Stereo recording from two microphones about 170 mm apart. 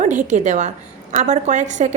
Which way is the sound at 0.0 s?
45° right (ahead or behind).